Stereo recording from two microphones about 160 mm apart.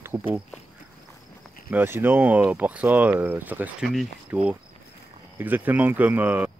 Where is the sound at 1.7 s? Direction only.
15° right (ahead or behind).